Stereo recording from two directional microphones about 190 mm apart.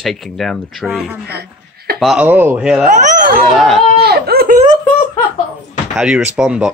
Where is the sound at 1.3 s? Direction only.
55° right (ahead or behind).